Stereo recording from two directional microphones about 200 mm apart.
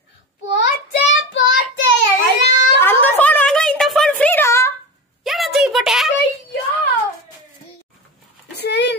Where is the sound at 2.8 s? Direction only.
10° left (ahead or behind).